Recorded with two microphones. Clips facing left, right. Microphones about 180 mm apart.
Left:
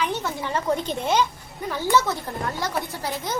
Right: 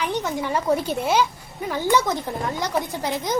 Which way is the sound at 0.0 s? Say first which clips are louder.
Right 2 dB; 15° right (ahead or behind).